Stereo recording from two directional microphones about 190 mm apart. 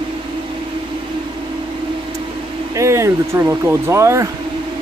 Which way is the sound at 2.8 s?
15° right (ahead or behind).